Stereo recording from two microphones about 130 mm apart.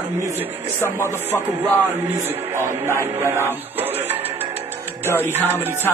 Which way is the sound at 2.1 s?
20° right (ahead or behind).